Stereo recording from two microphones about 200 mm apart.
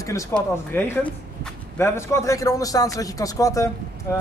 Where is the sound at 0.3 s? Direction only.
10° left (ahead or behind).